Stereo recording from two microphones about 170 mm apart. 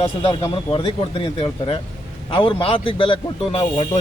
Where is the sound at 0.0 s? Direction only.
35° left (ahead or behind).